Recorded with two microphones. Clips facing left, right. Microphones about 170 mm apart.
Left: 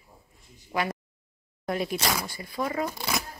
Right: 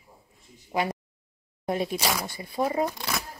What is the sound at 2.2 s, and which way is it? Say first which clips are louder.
Speech: right 3 dB; 25° right (ahead or behind).